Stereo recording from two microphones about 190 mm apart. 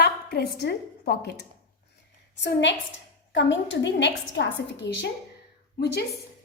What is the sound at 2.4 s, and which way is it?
A woman's voice, 70° left (ahead or behind).